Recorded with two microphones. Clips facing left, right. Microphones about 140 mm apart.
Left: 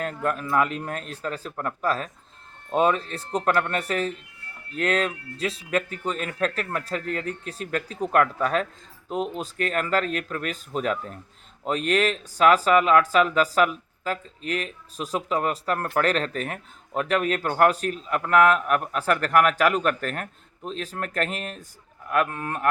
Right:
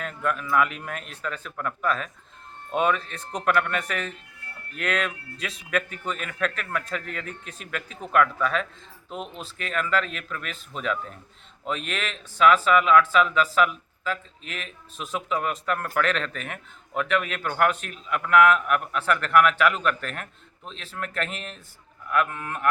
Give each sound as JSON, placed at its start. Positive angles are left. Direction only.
{"t": 0.0, "sound": "a man's voice", "side_deg": 40}